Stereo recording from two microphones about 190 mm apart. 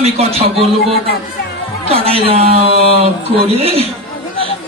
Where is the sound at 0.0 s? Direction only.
30° right (ahead or behind).